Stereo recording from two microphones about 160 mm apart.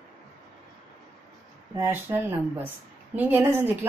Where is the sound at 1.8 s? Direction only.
15° right (ahead or behind).